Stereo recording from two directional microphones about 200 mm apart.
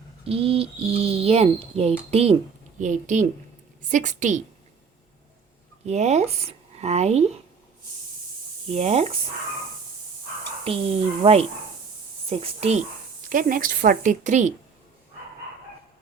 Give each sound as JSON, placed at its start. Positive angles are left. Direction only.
{"t": 0.3, "sound": "a woman's voice", "side_deg": -30}
{"t": 5.8, "sound": "speech", "side_deg": -35}
{"t": 8.7, "sound": "a woman's voice", "side_deg": -35}
{"t": 10.6, "sound": "a woman's voice", "side_deg": -30}
{"t": 13.2, "sound": "a woman's voice", "side_deg": -45}